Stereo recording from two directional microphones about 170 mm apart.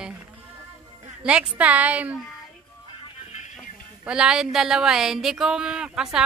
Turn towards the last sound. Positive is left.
turn(degrees=-5)  # may be behind; listen again after turning